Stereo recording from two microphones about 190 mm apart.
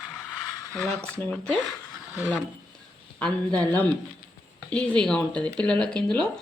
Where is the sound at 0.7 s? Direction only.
5° left (ahead or behind).